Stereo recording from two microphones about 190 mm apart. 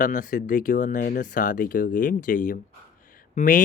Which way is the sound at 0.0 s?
45° left (ahead or behind).